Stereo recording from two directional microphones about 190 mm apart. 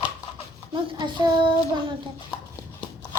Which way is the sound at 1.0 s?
25° right (ahead or behind).